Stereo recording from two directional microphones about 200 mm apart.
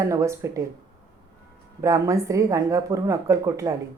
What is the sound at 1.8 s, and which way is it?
A woman's voice, 15° right (ahead or behind).